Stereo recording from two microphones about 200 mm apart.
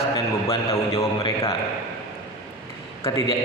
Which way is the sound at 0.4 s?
15° left (ahead or behind).